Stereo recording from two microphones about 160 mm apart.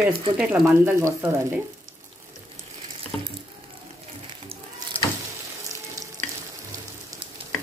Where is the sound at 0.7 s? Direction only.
15° right (ahead or behind).